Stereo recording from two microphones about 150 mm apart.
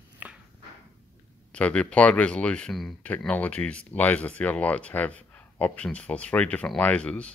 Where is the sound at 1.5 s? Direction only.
10° left (ahead or behind).